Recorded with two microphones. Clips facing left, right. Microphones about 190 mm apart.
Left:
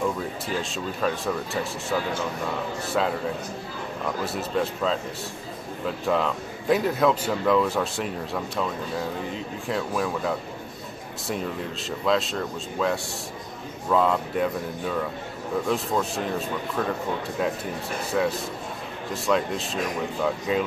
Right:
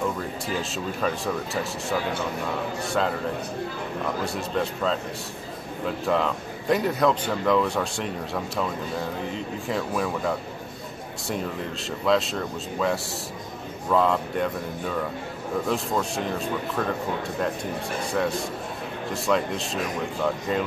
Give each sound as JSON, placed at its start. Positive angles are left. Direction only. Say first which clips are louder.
{"t": 0.2, "sound": "a man's voice", "louder": "even", "side_deg": 0}
{"t": 4.2, "sound": "a man's voice", "louder": "left 3 dB", "side_deg": 0}
{"t": 18.1, "sound": "a man's voice", "louder": "left 2 dB", "side_deg": 0}